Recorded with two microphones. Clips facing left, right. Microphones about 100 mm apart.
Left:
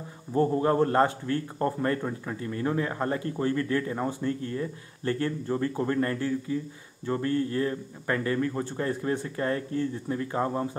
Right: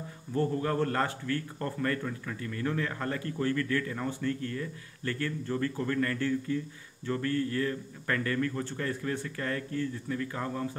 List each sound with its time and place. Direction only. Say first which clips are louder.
0.3 s a man's voice: left 6 dB; 25° left (ahead or behind)
6.2 s a man's voice: left 1 dB; 15° left (ahead or behind)